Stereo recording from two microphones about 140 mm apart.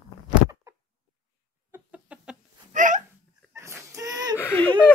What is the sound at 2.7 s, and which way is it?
Hiccup, 65° right (ahead or behind).